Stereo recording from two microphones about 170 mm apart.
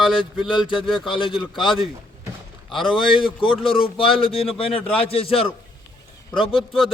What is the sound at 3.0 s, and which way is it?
A man's voice, 30° left (ahead or behind).